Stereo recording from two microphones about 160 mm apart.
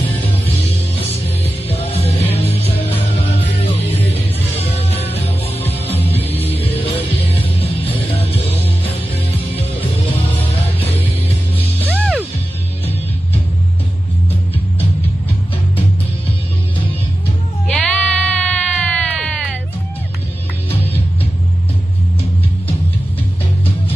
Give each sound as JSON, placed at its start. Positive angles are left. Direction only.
{"t": 0.0, "sound": "music", "side_deg": 35}
{"t": 11.9, "sound": "music", "side_deg": -10}
{"t": 17.6, "sound": "bleat", "side_deg": 5}